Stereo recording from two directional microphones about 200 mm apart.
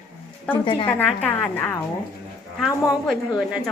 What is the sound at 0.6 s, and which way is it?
Speech, 25° left (ahead or behind).